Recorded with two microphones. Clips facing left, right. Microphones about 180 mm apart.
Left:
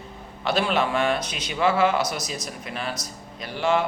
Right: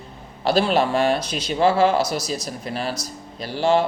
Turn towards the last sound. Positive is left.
turn(degrees=-35)  # may be behind; listen again after turning